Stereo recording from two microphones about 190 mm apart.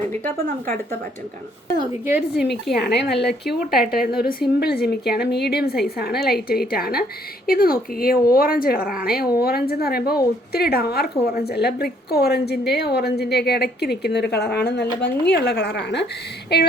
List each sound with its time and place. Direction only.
2.0 s speech: 5° right (ahead or behind)
2.7 s a woman's voice: 60° left (ahead or behind)